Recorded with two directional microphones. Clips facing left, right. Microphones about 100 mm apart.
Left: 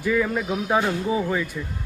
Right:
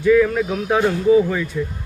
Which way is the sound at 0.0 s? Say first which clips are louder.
Right 8 dB; 5° left (ahead or behind).